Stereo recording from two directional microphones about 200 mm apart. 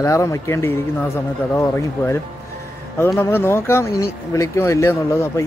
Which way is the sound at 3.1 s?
10° left (ahead or behind).